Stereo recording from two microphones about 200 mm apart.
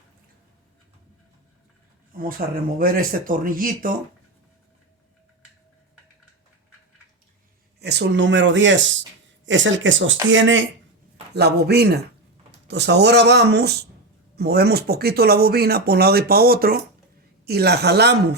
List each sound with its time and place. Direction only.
2.4 s speech: 45° right (ahead or behind)
7.8 s speech: 60° right (ahead or behind)
11.3 s speech: 55° right (ahead or behind)